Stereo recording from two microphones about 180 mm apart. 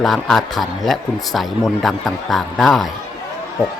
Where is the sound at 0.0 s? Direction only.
Centre (ahead or behind).